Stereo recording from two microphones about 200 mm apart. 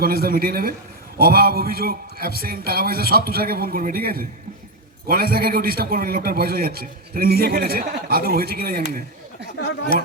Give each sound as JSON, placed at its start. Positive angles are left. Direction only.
{"t": 0.0, "sound": "a man's voice", "side_deg": -50}